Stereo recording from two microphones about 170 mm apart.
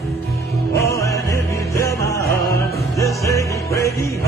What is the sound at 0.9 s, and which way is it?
Music, 20° left (ahead or behind).